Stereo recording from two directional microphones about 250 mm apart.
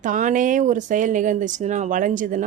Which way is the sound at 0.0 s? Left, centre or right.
Right.